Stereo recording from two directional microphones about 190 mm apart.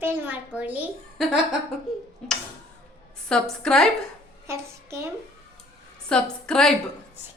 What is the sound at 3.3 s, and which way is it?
Speech, 5° left (ahead or behind).